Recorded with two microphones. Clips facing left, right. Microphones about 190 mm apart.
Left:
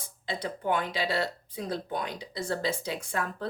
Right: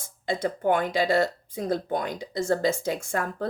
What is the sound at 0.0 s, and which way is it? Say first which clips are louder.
A woman's voice: right 7 dB; 50° right (ahead or behind).